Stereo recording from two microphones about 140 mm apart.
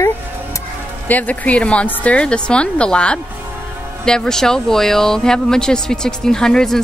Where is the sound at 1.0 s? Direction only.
10° left (ahead or behind).